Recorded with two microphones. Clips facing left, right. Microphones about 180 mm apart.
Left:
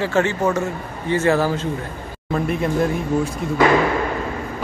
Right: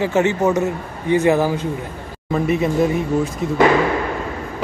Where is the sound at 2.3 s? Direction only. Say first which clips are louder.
Right 3 dB; centre (ahead or behind).